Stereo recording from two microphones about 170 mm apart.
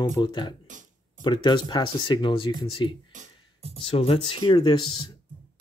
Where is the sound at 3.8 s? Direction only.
35° left (ahead or behind).